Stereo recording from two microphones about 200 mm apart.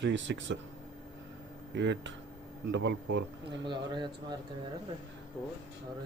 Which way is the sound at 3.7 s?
20° right (ahead or behind).